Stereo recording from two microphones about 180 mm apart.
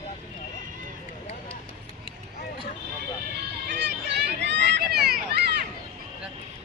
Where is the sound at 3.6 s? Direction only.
75° right (ahead or behind).